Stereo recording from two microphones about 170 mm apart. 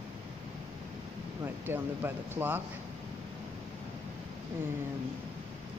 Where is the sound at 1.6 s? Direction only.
15° right (ahead or behind).